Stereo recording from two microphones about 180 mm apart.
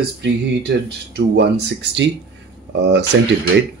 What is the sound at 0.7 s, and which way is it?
Speech, 65° right (ahead or behind).